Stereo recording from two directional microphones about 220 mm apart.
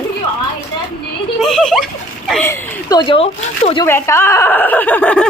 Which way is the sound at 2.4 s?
15° left (ahead or behind).